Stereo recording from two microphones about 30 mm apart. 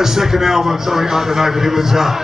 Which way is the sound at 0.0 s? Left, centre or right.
Centre.